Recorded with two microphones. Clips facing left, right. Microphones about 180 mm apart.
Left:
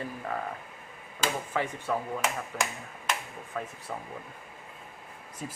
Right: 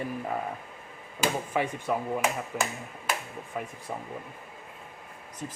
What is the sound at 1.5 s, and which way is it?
Speech, 15° right (ahead or behind).